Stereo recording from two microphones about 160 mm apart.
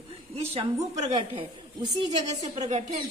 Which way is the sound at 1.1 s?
30° right (ahead or behind).